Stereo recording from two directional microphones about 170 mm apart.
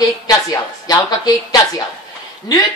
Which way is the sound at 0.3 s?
20° left (ahead or behind).